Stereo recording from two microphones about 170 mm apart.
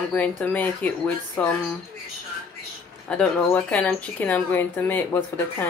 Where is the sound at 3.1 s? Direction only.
10° left (ahead or behind).